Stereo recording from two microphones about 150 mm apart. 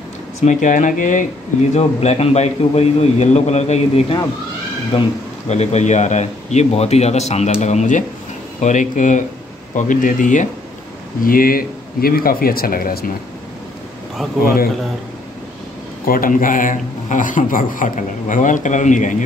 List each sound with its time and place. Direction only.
0.4 s speech: 55° left (ahead or behind)
1.7 s a man's voice: 45° left (ahead or behind)
11.2 s speech: 75° left (ahead or behind)
14.4 s speech: 75° left (ahead or behind)
16.1 s speech: 65° left (ahead or behind)